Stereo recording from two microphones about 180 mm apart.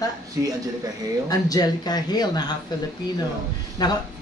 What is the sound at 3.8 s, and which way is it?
Speech, 20° left (ahead or behind).